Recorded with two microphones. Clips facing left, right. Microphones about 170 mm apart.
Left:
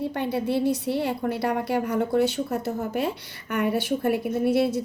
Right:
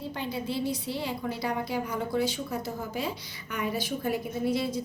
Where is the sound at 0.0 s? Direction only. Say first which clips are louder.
Left 7 dB; 65° left (ahead or behind).